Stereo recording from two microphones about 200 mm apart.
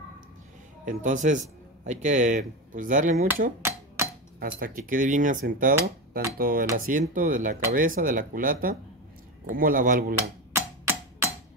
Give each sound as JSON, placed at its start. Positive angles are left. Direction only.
{"t": 0.8, "sound": "a man's voice", "side_deg": -40}
{"t": 3.6, "sound": "chopping", "side_deg": -10}
{"t": 4.4, "sound": "speech", "side_deg": -45}
{"t": 10.5, "sound": "music", "side_deg": -15}